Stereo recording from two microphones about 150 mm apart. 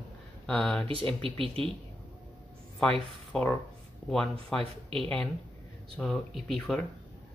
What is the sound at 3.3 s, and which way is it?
Speech, 10° left (ahead or behind).